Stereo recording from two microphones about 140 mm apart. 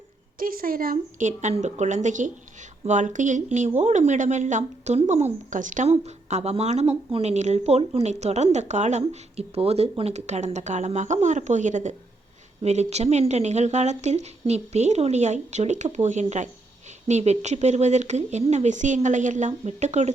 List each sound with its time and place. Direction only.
0.3 s a woman's voice: 90° right
1.3 s a woman's voice: 55° right (ahead or behind)